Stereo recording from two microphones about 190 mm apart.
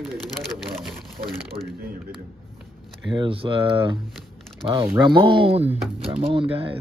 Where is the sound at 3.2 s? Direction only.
30° right (ahead or behind).